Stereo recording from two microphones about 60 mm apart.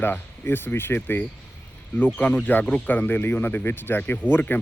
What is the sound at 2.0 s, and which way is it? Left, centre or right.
Speech, left.